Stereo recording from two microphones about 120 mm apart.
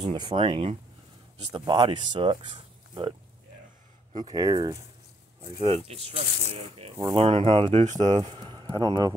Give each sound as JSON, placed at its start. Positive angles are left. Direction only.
{"t": 0.0, "sound": "speech", "side_deg": -40}
{"t": 5.6, "sound": "speech", "side_deg": -55}
{"t": 7.0, "sound": "speech", "side_deg": -40}
{"t": 7.2, "sound": "speech", "side_deg": -50}
{"t": 7.8, "sound": "speech", "side_deg": -80}
{"t": 8.4, "sound": "a sound", "side_deg": -45}